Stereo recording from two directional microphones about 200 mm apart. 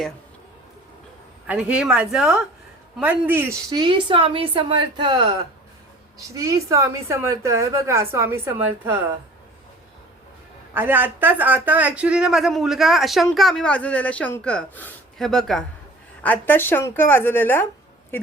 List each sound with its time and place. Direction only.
1.5 s a woman's voice: 5° right (ahead or behind)
3.8 s a woman's voice: 25° right (ahead or behind)
10.8 s a woman's voice: 10° right (ahead or behind); by 17.7 s 10° left (ahead or behind)